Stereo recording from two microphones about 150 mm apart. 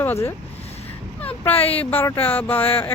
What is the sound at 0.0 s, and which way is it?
Speech, 15° left (ahead or behind).